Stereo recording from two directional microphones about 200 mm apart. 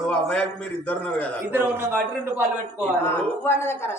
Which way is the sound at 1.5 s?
10° right (ahead or behind).